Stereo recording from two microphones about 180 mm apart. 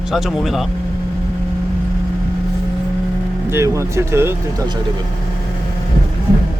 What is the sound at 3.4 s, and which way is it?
Speech, 15° right (ahead or behind).